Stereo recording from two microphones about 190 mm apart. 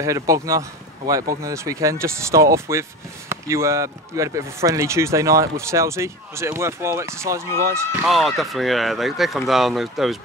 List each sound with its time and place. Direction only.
0.0 s speech: 15° right (ahead or behind)
8.1 s speech: centre (ahead or behind)